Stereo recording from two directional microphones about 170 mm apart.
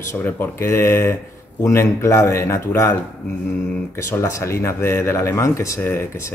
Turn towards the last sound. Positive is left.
turn(degrees=15)  # may be behind; listen again after turning